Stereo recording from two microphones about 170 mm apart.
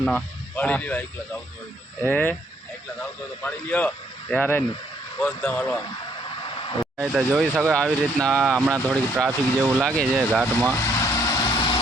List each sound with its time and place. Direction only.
0.0 s a man's voice: 5° left (ahead or behind)
6.4 s a sound: 30° left (ahead or behind)
7.0 s speech: 5° right (ahead or behind)
10.7 s vehicle: 15° left (ahead or behind)